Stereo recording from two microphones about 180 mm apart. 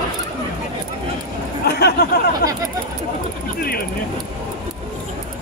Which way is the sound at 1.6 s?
65° left (ahead or behind).